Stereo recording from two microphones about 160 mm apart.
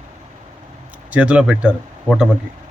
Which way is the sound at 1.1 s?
5° right (ahead or behind).